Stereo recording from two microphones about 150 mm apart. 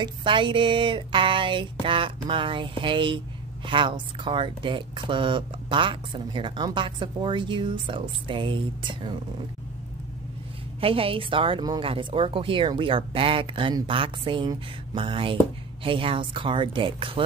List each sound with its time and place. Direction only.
0.0 s speech: 35° right (ahead or behind)
10.8 s speech: 40° right (ahead or behind)